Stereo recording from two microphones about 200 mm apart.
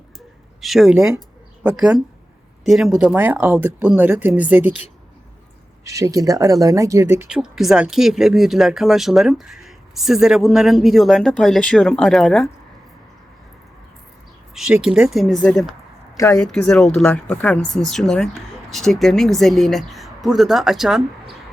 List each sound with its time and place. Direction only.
0.6 s speech: centre (ahead or behind)
5.8 s speech: 15° right (ahead or behind); by 12.5 s centre (ahead or behind)
14.5 s speech: 5° right (ahead or behind)
16.1 s speech: 15° left (ahead or behind)
16.4 s speech: centre (ahead or behind)